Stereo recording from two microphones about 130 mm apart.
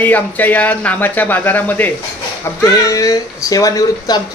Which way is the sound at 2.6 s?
25° left (ahead or behind).